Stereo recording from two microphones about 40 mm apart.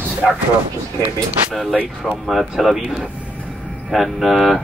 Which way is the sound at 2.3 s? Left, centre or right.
Centre.